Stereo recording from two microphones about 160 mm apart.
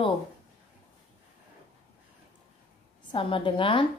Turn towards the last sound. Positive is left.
turn(degrees=30)  # may be behind; listen again after turning